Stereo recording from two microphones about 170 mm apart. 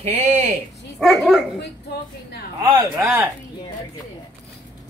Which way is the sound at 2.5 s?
25° right (ahead or behind).